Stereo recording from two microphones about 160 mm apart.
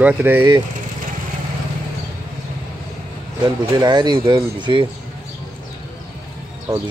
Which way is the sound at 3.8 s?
30° right (ahead or behind).